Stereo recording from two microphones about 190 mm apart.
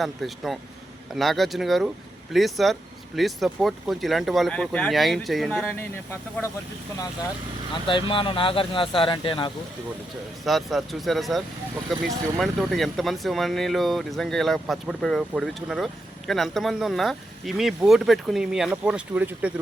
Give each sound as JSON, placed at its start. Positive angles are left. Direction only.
{"t": 0.0, "sound": "speech", "side_deg": 0}
{"t": 7.7, "sound": "speech", "side_deg": 25}
{"t": 10.4, "sound": "speech", "side_deg": 0}